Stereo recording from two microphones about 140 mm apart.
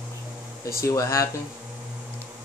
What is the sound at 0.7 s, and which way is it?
Speech, 20° left (ahead or behind).